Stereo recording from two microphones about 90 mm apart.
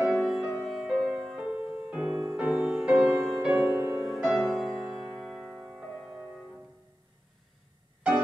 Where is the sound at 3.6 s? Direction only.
20° right (ahead or behind).